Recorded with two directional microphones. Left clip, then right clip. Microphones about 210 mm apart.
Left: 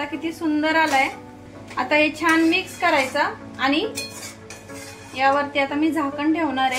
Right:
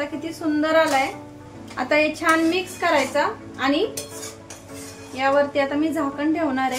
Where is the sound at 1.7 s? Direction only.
20° right (ahead or behind).